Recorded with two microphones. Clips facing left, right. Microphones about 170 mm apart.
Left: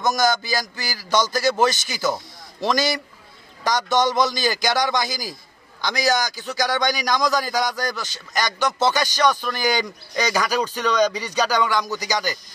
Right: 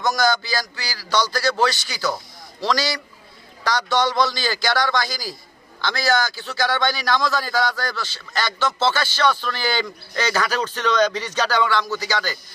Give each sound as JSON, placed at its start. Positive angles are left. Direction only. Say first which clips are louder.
{"t": 0.0, "sound": "a man's voice", "louder": "even", "side_deg": 20}